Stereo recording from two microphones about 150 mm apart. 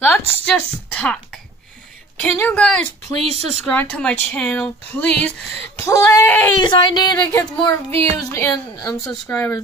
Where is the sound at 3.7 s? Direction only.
10° left (ahead or behind).